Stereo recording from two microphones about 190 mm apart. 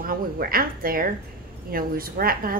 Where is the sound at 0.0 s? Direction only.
50° right (ahead or behind).